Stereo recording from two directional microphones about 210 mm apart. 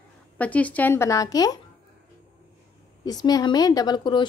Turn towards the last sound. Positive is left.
turn(degrees=20)  # may be behind; listen again after turning